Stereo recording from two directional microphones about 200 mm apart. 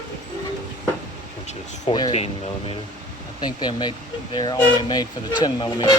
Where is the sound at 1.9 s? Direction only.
25° left (ahead or behind).